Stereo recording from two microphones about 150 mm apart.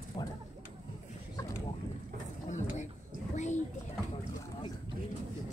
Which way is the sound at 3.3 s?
50° left (ahead or behind).